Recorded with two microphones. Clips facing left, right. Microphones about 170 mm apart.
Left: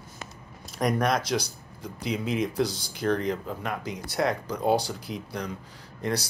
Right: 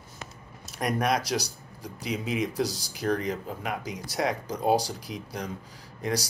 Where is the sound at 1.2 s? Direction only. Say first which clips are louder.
Left 1 dB; 35° right (ahead or behind).